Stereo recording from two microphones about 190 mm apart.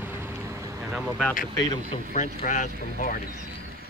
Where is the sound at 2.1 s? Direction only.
40° left (ahead or behind).